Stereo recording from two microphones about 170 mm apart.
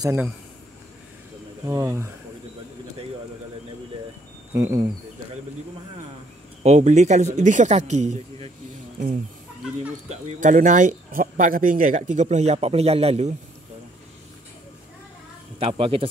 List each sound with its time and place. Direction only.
0.0 s speech: 15° right (ahead or behind)
1.7 s speech: 20° right (ahead or behind)
4.6 s speech: 20° right (ahead or behind)
6.6 s speech: 45° right (ahead or behind)
10.0 s speech: 45° right (ahead or behind)
15.6 s speech: 30° right (ahead or behind)